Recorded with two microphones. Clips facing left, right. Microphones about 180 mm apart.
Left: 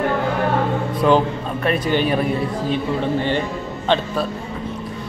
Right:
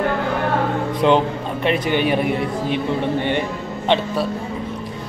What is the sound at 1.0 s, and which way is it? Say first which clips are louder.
A man's voice: even; 20° right (ahead or behind).